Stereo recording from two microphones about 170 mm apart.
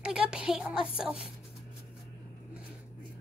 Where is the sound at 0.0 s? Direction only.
5° right (ahead or behind).